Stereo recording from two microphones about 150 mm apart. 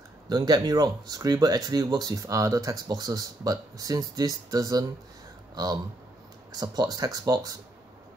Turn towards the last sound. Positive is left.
turn(degrees=-25)  # may be behind; listen again after turning